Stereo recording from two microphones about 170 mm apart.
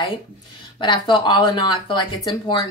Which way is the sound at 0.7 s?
30° left (ahead or behind).